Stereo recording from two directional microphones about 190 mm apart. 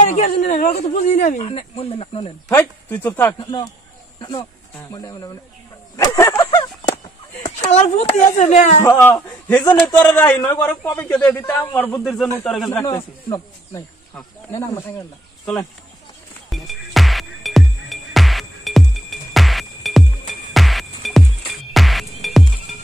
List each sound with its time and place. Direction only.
0.0 s a man's voice: 40° left (ahead or behind)
2.5 s a man's voice: 10° left (ahead or behind)
4.2 s speech: 20° left (ahead or behind)
5.9 s a sound: 15° left (ahead or behind)
7.7 s speech: 40° left (ahead or behind)
8.8 s a man's voice: 10° left (ahead or behind)
12.8 s a man's voice: 20° left (ahead or behind)
16.4 s music: centre (ahead or behind)